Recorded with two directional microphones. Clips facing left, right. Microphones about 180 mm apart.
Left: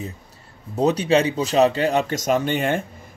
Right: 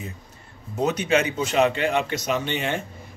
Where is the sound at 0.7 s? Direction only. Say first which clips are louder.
Left 4 dB; 35° left (ahead or behind).